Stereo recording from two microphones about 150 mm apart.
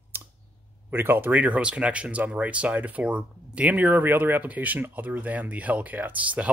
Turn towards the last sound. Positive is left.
turn(degrees=-10)  # may be behind; listen again after turning